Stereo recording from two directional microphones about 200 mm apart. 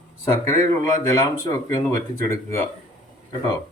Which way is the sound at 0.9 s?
15° left (ahead or behind).